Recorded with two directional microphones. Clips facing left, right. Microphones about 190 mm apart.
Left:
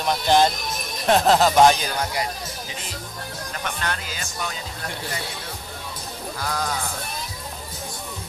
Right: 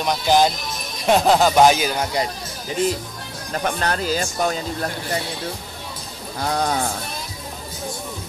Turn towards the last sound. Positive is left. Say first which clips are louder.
# right 5 dB
turn(degrees=-30)  # may be behind; listen again after turning